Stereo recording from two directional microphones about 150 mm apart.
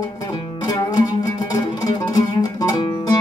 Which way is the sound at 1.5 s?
25° left (ahead or behind).